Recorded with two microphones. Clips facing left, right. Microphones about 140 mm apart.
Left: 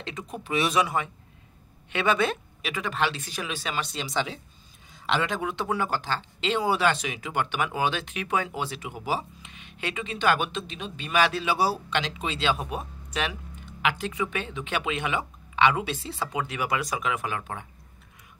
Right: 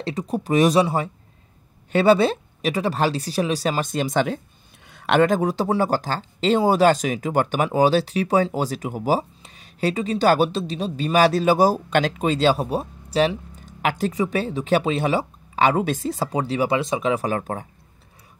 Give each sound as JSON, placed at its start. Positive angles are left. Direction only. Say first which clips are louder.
{"t": 0.0, "sound": "speech", "louder": "right 10 dB", "side_deg": -35}
{"t": 4.8, "sound": "speech", "louder": "right 10 dB", "side_deg": -65}